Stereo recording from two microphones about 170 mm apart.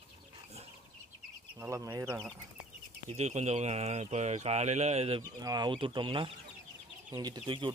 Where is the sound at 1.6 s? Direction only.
15° right (ahead or behind).